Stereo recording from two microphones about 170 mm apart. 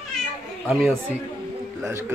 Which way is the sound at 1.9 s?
15° right (ahead or behind).